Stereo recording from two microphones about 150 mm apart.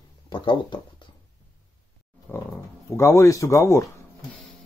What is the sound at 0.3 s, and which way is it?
Speech, 30° left (ahead or behind).